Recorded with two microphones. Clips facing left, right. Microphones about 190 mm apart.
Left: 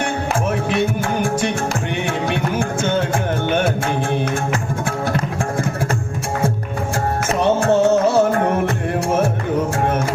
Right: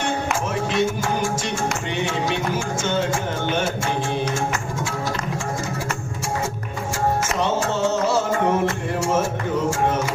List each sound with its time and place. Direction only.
0.7 s music: 60° left (ahead or behind)
7.3 s music: 55° left (ahead or behind)